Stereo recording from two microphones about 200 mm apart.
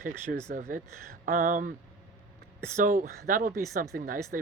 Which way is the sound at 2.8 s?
45° right (ahead or behind).